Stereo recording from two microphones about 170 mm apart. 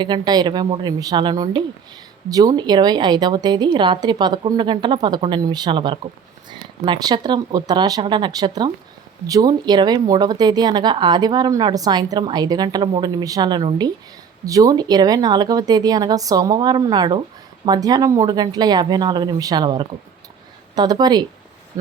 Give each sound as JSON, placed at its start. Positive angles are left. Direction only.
{"t": 0.0, "sound": "speech", "side_deg": -25}